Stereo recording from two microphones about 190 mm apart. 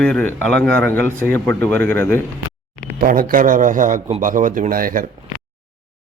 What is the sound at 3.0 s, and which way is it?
Speech, 50° right (ahead or behind).